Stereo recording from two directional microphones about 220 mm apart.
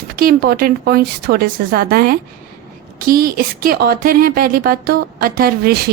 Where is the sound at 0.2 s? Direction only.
40° right (ahead or behind).